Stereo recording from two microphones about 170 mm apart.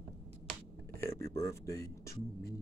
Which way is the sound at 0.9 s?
15° left (ahead or behind).